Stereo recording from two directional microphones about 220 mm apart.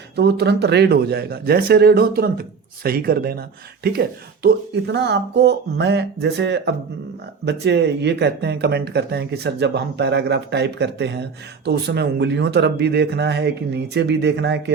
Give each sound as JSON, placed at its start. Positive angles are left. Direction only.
{"t": 0.2, "sound": "speech", "side_deg": -50}
{"t": 4.4, "sound": "speech", "side_deg": -50}